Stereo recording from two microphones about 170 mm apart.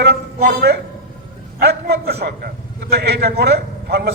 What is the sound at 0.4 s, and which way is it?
A man's voice, 70° right (ahead or behind).